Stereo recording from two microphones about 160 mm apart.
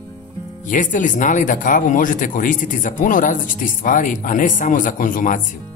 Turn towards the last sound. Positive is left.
turn(degrees=55)  # may be behind; listen again after turning